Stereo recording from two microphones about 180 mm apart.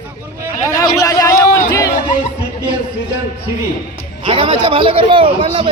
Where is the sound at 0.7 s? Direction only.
20° left (ahead or behind).